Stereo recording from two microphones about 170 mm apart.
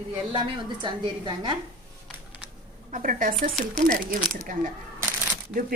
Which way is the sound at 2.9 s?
50° right (ahead or behind).